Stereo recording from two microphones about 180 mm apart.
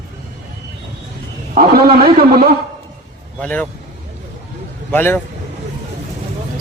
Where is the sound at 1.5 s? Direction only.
55° right (ahead or behind).